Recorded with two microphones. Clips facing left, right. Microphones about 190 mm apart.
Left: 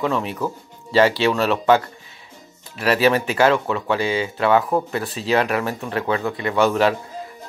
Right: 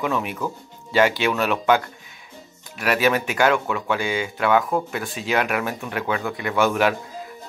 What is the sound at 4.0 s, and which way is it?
Speech, 30° left (ahead or behind).